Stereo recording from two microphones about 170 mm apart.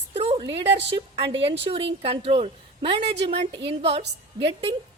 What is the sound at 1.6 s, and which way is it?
A woman's voice, 30° right (ahead or behind).